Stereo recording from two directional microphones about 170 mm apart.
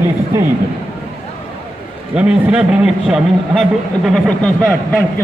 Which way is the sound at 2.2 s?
5° right (ahead or behind).